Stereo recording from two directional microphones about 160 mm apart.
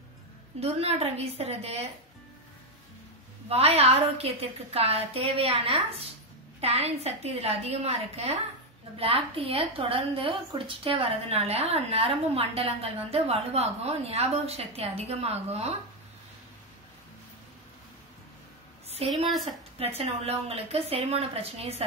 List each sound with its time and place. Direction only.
0.6 s a woman's voice: 40° right (ahead or behind)
3.4 s a woman's voice: 40° right (ahead or behind)
18.9 s a sound: 40° right (ahead or behind)
20.0 s a woman's voice: 40° right (ahead or behind)